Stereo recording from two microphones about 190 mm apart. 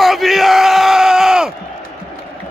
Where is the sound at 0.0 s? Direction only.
Centre (ahead or behind).